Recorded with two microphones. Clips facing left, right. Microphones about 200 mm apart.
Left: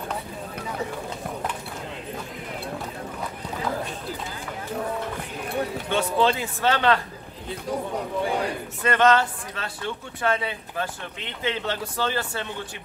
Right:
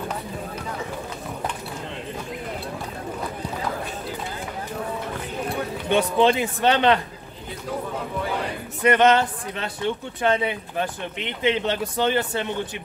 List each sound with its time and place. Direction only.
5.9 s speech: 20° right (ahead or behind)
8.8 s speech: 20° right (ahead or behind)